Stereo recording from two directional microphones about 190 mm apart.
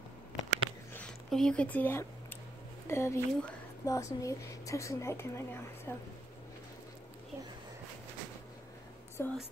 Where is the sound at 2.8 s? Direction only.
15° left (ahead or behind).